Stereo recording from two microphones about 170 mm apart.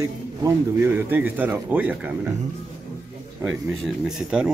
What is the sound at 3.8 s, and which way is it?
Speech, 5° right (ahead or behind).